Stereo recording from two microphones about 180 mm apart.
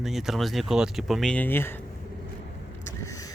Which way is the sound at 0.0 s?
Centre (ahead or behind).